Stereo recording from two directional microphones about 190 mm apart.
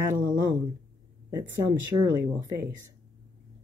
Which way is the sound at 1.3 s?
15° right (ahead or behind).